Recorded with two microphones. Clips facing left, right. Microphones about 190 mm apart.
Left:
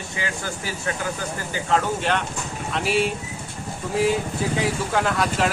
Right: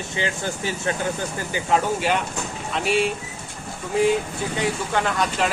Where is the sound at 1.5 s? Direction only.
15° right (ahead or behind).